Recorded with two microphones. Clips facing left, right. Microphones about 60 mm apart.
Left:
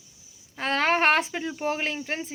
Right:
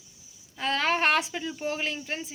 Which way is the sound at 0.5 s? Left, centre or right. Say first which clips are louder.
Left 3 dB; left.